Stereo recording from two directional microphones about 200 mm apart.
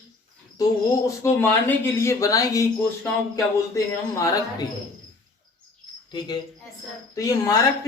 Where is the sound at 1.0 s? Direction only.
10° left (ahead or behind).